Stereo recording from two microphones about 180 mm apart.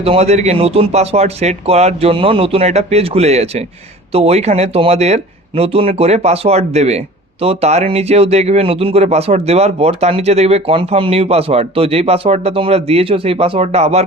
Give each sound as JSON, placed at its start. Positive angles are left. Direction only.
{"t": 0.0, "sound": "speech", "side_deg": -35}